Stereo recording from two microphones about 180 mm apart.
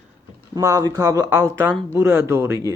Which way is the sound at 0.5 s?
20° right (ahead or behind).